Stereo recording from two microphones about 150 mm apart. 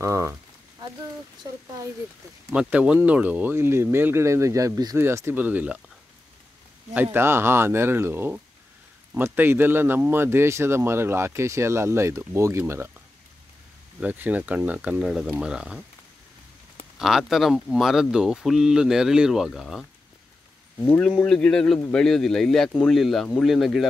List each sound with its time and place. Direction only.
0.0 s a sound: 20° right (ahead or behind)
2.5 s a man's voice: 5° right (ahead or behind)
6.9 s a man's voice: 15° right (ahead or behind)
13.9 s a man's voice: 10° right (ahead or behind)
17.0 s speech: centre (ahead or behind)
21.2 s speech: 5° left (ahead or behind)